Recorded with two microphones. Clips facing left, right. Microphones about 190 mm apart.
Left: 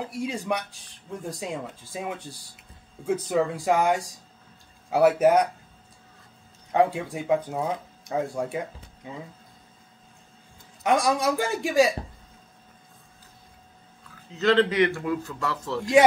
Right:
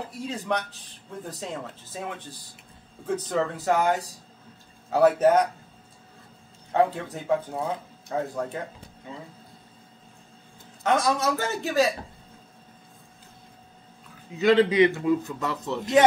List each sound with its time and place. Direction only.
0.1 s speech: 10° left (ahead or behind)
6.7 s speech: 10° left (ahead or behind)
10.8 s speech: 10° left (ahead or behind)
14.4 s a man's voice: 10° right (ahead or behind)